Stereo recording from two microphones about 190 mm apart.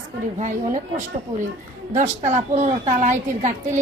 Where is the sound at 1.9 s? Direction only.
40° right (ahead or behind).